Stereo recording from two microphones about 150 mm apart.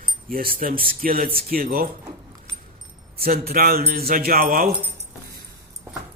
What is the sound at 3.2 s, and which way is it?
Speech, 85° right.